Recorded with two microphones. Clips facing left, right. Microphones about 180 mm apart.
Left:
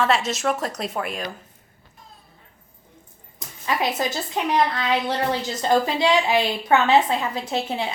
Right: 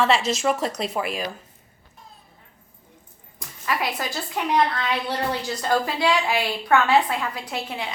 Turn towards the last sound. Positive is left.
turn(degrees=25)  # may be behind; listen again after turning